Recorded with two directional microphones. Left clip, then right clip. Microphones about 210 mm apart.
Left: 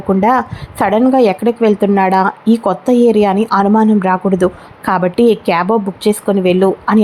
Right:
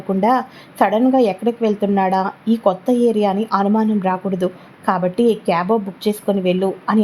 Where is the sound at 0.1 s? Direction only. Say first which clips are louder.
Left 5 dB; 15° left (ahead or behind).